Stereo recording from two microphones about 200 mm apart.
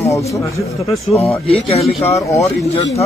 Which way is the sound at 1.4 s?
30° left (ahead or behind).